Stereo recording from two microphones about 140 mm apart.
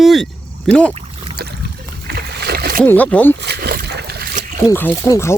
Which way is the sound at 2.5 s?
90° right.